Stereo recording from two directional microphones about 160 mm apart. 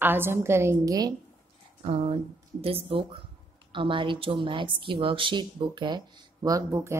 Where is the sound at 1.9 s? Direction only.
40° right (ahead or behind).